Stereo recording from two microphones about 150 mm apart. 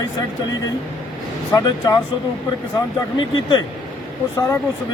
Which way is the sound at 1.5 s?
25° left (ahead or behind).